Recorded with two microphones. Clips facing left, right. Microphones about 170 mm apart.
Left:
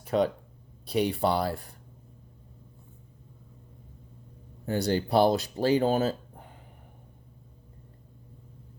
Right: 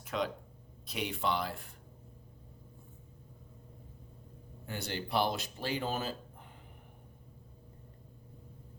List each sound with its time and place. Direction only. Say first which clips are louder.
0.0 s a sound: left 10 dB; 35° left (ahead or behind)
0.9 s speech: left 9 dB; 35° left (ahead or behind)
4.6 s speech: left 12 dB; 40° left (ahead or behind)